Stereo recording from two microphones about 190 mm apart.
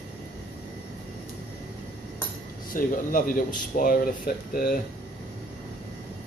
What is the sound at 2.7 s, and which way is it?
Speech, 45° left (ahead or behind).